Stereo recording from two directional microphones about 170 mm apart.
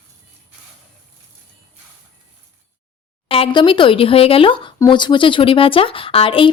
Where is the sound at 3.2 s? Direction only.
35° left (ahead or behind).